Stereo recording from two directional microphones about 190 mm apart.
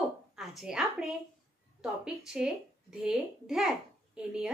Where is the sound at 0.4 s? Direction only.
Centre (ahead or behind).